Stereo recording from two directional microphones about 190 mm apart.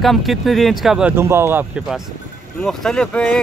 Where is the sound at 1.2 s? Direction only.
15° right (ahead or behind); by 3.4 s 5° left (ahead or behind).